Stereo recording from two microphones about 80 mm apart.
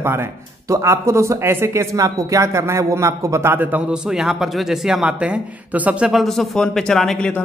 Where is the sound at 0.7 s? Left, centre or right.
Right.